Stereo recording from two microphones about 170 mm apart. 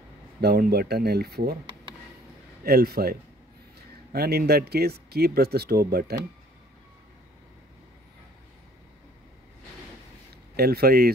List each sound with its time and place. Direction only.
0.4 s speech: 70° right (ahead or behind)
2.6 s speech: 65° right (ahead or behind)
10.5 s speech: 65° right (ahead or behind)